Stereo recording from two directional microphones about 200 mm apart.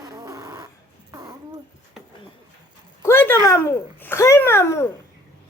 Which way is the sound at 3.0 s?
10° left (ahead or behind).